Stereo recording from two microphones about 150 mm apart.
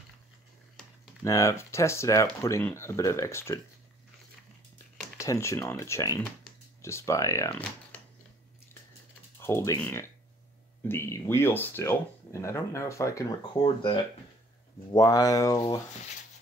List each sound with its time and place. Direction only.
1.2 s speech: 20° left (ahead or behind)
5.1 s speech: 20° left (ahead or behind)
9.4 s speech: 15° left (ahead or behind)